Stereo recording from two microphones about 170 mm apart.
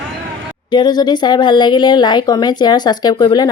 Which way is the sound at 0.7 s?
25° left (ahead or behind).